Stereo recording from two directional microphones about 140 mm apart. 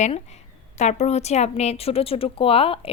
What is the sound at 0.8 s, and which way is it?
A woman's voice, 55° left (ahead or behind).